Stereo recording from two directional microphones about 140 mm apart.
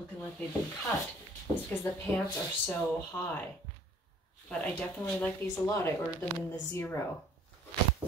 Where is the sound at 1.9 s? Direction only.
15° left (ahead or behind).